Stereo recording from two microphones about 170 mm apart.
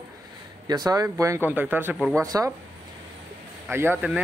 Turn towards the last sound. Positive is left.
turn(degrees=-10)  # may be behind; listen again after turning